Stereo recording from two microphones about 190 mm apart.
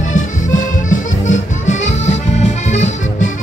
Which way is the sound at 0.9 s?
40° left (ahead or behind).